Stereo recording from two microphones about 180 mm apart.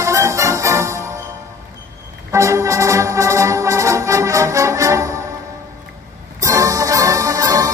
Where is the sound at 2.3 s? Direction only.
15° right (ahead or behind).